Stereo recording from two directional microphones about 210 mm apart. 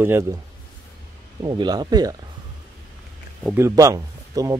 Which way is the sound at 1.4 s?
20° right (ahead or behind).